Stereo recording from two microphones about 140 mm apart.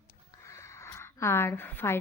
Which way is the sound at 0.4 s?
20° left (ahead or behind).